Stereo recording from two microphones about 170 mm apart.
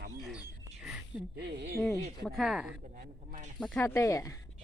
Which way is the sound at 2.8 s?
55° right (ahead or behind).